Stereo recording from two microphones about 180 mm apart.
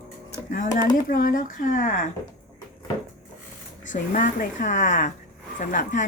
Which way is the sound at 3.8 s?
45° left (ahead or behind).